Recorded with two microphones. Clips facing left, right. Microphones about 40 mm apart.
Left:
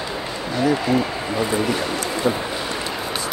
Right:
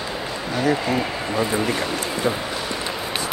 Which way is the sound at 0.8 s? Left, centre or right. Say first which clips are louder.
Left 2 dB; centre.